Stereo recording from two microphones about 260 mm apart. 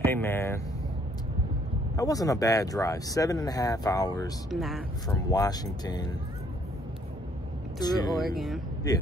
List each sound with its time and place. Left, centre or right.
0.0 s speech: centre
2.0 s speech: centre
4.5 s speech: centre
5.0 s speech: centre
7.8 s speech: centre